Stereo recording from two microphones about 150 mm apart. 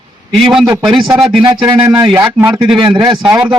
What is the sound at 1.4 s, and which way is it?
Speech, 25° right (ahead or behind).